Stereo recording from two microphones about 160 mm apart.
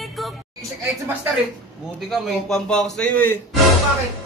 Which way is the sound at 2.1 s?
Centre (ahead or behind).